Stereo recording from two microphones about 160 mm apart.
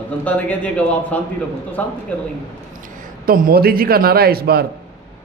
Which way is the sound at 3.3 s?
65° right (ahead or behind).